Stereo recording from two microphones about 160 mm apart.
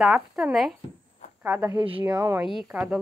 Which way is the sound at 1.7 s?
30° right (ahead or behind).